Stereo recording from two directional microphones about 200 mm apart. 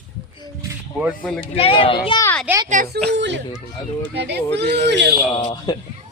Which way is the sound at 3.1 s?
60° right (ahead or behind).